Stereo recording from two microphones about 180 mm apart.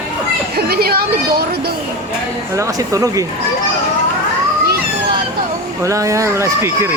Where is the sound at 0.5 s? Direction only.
60° right (ahead or behind).